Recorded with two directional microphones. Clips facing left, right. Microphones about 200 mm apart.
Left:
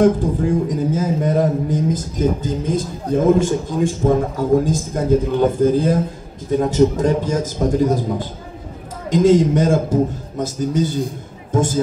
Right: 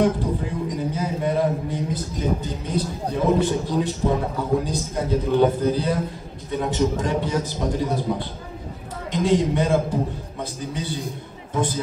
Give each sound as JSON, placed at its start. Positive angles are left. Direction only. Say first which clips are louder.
{"t": 0.0, "sound": "a man's voice", "louder": "left 6 dB", "side_deg": 45}